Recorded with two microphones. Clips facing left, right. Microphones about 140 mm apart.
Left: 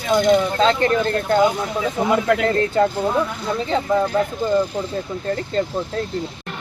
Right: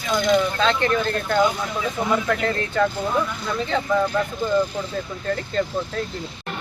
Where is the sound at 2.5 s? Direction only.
35° left (ahead or behind).